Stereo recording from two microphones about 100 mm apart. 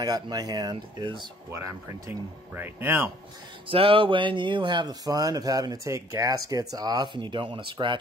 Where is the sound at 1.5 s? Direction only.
30° right (ahead or behind).